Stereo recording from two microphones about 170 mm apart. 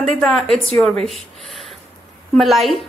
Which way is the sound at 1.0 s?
Centre (ahead or behind).